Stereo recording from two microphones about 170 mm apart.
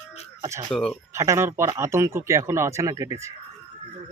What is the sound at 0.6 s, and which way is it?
Speech, 5° left (ahead or behind).